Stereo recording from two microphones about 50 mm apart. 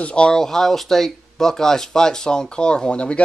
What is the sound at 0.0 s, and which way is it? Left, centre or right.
Speech, left.